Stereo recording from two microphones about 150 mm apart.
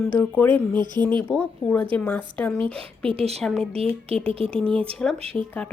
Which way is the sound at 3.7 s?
40° right (ahead or behind).